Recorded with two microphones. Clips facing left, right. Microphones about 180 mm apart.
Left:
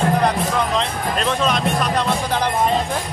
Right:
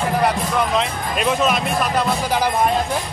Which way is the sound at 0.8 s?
5° right (ahead or behind).